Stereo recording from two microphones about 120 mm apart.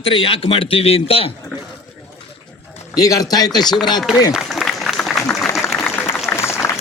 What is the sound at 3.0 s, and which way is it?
Speech, 30° left (ahead or behind).